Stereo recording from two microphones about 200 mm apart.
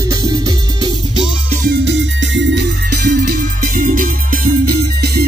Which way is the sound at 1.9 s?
60° right (ahead or behind).